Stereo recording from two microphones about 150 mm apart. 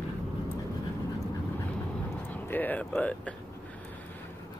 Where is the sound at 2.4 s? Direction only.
10° left (ahead or behind).